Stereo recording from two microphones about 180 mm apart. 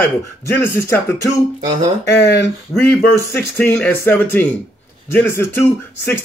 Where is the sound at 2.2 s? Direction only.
70° left (ahead or behind).